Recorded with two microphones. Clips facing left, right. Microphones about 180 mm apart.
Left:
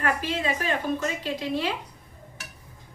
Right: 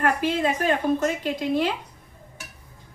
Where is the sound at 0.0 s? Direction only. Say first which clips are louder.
Right 5 dB; 55° right (ahead or behind).